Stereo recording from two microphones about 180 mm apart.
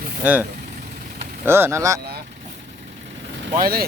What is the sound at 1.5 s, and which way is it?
Speech, 15° right (ahead or behind).